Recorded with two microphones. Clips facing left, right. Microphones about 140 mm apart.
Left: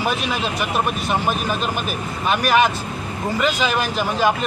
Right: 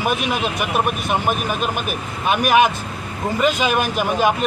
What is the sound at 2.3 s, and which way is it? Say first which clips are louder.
Speech: right 2 dB; 10° right (ahead or behind).